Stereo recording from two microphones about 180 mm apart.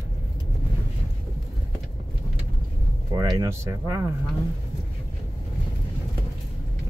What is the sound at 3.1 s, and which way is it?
Speech, 20° right (ahead or behind).